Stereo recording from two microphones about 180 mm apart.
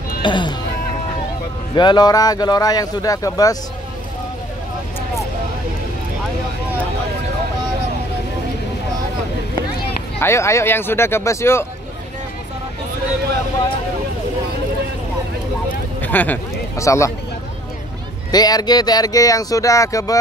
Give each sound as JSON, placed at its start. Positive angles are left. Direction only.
{"t": 0.2, "sound": "speech", "side_deg": 25}
{"t": 1.8, "sound": "speech", "side_deg": 25}
{"t": 10.2, "sound": "speech", "side_deg": 15}
{"t": 16.0, "sound": "speech", "side_deg": 10}
{"t": 18.3, "sound": "speech", "side_deg": 20}